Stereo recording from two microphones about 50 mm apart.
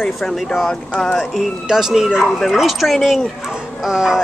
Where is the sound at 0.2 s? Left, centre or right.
Centre.